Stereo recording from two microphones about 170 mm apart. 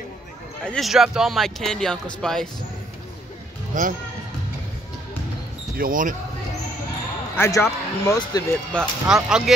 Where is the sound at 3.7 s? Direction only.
50° right (ahead or behind).